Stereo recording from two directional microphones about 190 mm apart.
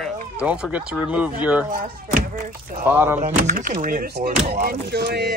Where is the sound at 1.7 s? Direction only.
45° right (ahead or behind).